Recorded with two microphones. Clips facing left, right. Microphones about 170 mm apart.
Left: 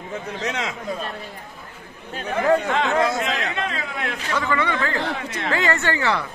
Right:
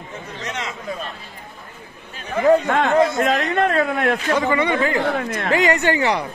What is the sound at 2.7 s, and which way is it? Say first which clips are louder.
A man's voice: right 4 dB; 55° right (ahead or behind).